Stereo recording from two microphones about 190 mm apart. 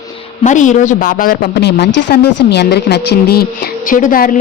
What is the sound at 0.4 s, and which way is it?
A woman's voice, 40° left (ahead or behind).